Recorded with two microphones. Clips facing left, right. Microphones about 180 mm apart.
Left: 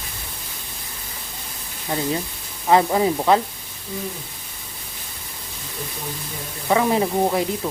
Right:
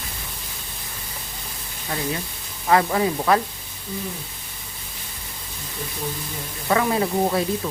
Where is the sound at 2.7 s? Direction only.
20° left (ahead or behind).